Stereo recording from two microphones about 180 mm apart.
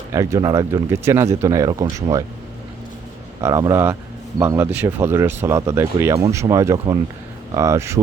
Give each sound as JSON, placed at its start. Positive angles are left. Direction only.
{"t": 0.1, "sound": "speech", "side_deg": -15}
{"t": 3.4, "sound": "speech", "side_deg": -15}